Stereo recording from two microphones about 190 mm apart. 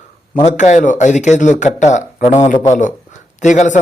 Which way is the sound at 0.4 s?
40° left (ahead or behind).